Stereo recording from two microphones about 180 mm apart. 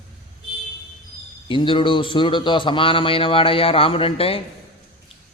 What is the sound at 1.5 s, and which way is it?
A man's voice, 30° left (ahead or behind).